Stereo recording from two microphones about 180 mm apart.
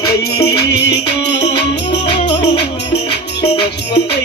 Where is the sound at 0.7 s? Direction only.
70° left (ahead or behind).